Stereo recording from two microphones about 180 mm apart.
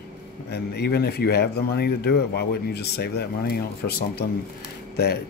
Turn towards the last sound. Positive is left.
turn(degrees=60)  # may be behind; listen again after turning